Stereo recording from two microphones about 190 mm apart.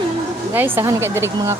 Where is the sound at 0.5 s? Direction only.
10° right (ahead or behind).